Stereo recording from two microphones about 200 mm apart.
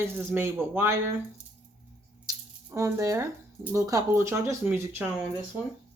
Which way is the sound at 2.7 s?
15° right (ahead or behind).